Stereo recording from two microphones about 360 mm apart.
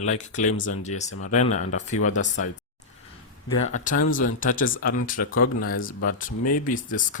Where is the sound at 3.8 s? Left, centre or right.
Left.